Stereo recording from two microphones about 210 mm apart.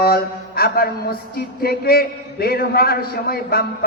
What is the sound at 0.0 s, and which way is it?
Mantra, 45° left (ahead or behind).